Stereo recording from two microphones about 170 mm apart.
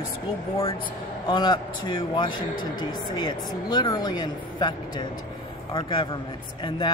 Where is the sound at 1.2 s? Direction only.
25° left (ahead or behind).